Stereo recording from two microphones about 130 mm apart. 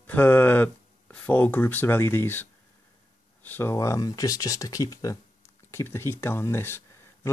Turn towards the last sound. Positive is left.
turn(degrees=20)  # may be behind; listen again after turning